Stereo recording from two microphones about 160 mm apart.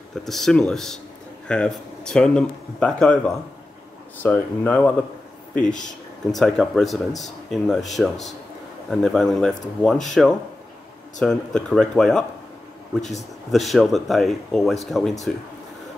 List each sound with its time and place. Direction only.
0.1 s speech: centre (ahead or behind)
11.1 s speech: 5° left (ahead or behind)
13.5 s speech: centre (ahead or behind)